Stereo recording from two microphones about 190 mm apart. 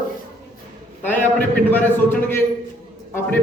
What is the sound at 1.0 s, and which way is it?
A man's voice, 10° left (ahead or behind).